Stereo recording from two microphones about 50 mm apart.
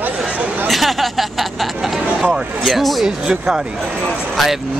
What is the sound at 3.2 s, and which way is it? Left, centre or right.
Speech, centre.